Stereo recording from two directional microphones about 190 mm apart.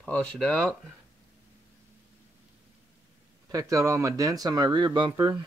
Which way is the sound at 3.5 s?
15° right (ahead or behind).